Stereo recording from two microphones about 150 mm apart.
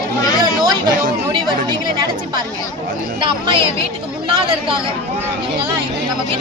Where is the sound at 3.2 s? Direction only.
35° right (ahead or behind).